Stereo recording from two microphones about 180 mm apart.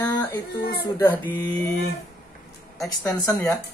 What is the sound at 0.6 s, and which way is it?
Speech, 60° left (ahead or behind).